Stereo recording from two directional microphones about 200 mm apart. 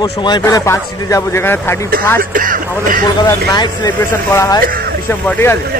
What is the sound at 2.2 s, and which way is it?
Speech, 45° right (ahead or behind).